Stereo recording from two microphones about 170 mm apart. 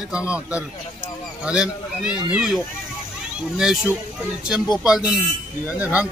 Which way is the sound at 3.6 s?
5° right (ahead or behind).